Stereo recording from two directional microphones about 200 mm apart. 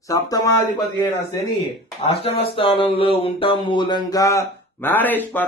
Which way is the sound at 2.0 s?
30° left (ahead or behind).